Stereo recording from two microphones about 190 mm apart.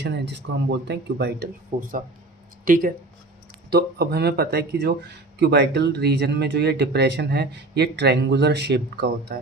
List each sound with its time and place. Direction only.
0.0 s speech: 65° right (ahead or behind)
1.7 s speech: 45° right (ahead or behind)